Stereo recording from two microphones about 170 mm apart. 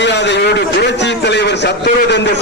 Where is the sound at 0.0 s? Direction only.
90° left.